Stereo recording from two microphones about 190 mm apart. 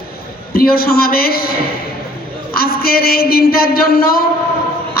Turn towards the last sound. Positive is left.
turn(degrees=55)  # may be behind; listen again after turning